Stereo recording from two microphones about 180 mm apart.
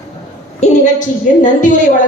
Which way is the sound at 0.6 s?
45° left (ahead or behind).